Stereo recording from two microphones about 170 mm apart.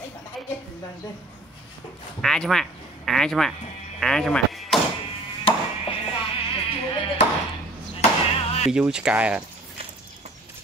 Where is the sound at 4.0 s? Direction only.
Centre (ahead or behind).